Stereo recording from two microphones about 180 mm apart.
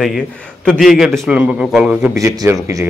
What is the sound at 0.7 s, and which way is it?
A man's voice, centre (ahead or behind).